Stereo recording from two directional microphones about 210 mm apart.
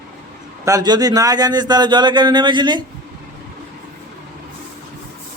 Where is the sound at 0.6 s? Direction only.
15° right (ahead or behind).